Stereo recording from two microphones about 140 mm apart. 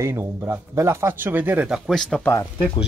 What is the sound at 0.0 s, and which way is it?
Speech, 20° right (ahead or behind).